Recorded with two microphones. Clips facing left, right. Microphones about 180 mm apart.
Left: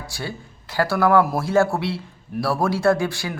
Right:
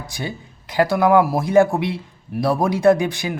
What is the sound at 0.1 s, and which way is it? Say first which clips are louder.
Speech: right 3 dB; 20° right (ahead or behind).